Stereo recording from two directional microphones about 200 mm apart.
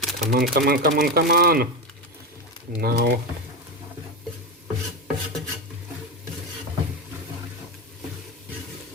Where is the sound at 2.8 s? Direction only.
50° right (ahead or behind).